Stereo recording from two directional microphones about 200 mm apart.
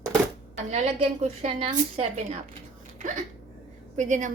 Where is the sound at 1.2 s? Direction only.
30° right (ahead or behind).